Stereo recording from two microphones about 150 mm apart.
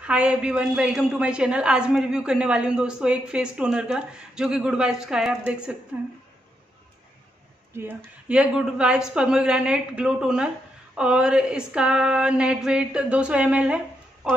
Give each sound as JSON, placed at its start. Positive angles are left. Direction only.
{"t": 0.0, "sound": "a woman's voice", "side_deg": -5}
{"t": 7.7, "sound": "speech", "side_deg": -15}
{"t": 8.3, "sound": "a woman's voice", "side_deg": -5}